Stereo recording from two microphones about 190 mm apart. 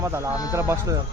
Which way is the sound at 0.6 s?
15° right (ahead or behind).